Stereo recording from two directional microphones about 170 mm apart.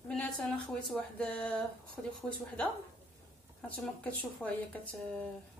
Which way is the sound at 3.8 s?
5° left (ahead or behind).